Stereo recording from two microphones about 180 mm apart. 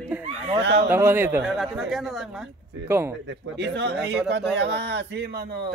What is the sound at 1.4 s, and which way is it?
Speech, centre (ahead or behind).